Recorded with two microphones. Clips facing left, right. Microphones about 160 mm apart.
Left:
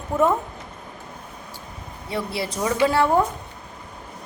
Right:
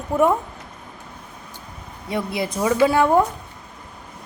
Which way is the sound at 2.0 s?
20° right (ahead or behind).